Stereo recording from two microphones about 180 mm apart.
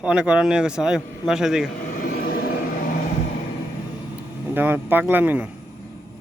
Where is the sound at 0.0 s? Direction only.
5° right (ahead or behind).